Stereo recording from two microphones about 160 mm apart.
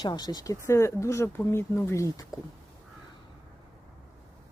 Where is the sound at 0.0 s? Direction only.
25° left (ahead or behind).